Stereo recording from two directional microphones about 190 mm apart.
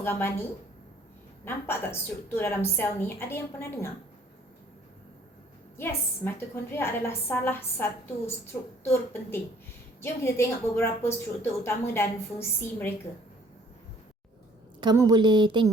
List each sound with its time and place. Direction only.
0.0 s a woman's voice: 10° left (ahead or behind)
1.5 s a woman's voice: 10° left (ahead or behind)
5.7 s a woman's voice: 10° left (ahead or behind)
14.8 s a woman's voice: 20° right (ahead or behind)